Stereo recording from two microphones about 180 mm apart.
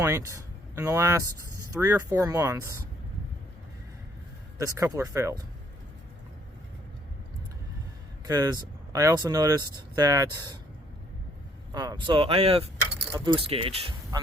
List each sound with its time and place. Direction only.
0.0 s speech: 15° right (ahead or behind)
4.5 s speech: 20° right (ahead or behind)
8.3 s speech: 20° right (ahead or behind)
11.7 s speech: 20° right (ahead or behind)